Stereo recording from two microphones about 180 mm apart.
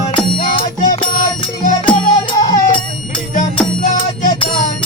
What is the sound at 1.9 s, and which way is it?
Music, 25° left (ahead or behind).